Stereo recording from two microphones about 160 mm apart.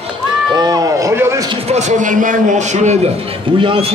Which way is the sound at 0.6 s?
20° right (ahead or behind).